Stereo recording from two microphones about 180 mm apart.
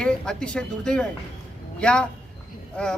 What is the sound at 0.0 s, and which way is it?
A man's voice, 5° left (ahead or behind).